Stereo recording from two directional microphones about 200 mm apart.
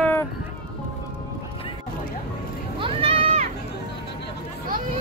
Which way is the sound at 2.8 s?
25° right (ahead or behind).